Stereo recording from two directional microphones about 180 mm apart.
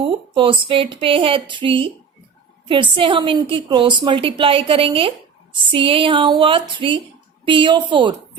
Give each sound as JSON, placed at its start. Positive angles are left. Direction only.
{"t": 0.0, "sound": "a woman's voice", "side_deg": -30}
{"t": 2.9, "sound": "a woman's voice", "side_deg": -30}